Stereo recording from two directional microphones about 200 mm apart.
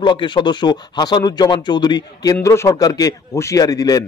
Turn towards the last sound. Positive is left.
turn(degrees=20)  # may be behind; listen again after turning